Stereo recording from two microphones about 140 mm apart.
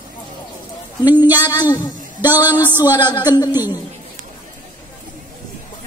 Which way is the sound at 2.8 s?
30° left (ahead or behind).